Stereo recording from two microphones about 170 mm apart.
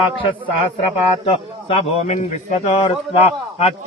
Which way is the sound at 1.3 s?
35° left (ahead or behind).